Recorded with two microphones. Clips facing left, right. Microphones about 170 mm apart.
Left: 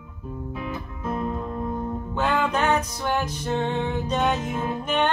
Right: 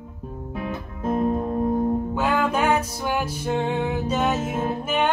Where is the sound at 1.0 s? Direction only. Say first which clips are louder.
Right 6 dB; 50° right (ahead or behind).